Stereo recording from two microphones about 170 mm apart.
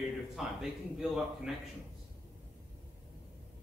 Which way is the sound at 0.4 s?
Centre (ahead or behind).